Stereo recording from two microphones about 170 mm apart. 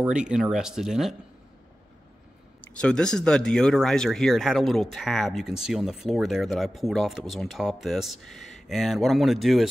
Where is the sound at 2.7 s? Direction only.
5° left (ahead or behind).